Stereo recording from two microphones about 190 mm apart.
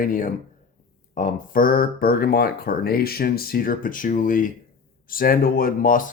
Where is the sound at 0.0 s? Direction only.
45° left (ahead or behind).